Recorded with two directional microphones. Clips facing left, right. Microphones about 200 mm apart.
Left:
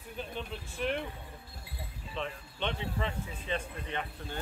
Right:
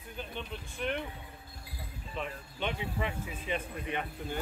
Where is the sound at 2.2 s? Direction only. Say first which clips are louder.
Even; 5° right (ahead or behind).